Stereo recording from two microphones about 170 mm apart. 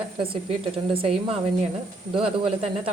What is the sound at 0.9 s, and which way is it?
Speech, 35° right (ahead or behind).